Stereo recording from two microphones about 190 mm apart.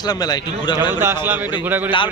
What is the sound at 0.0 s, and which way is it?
Speech, 20° left (ahead or behind).